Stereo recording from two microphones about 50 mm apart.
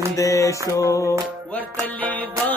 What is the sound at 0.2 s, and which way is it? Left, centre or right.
Mantra, left.